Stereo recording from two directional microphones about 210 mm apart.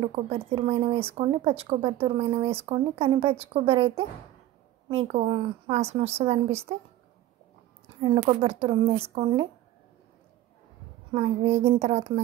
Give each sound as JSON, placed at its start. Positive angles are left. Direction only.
{"t": 0.0, "sound": "a woman's voice", "side_deg": -30}
{"t": 8.0, "sound": "a woman's voice", "side_deg": -25}
{"t": 11.1, "sound": "a woman's voice", "side_deg": -25}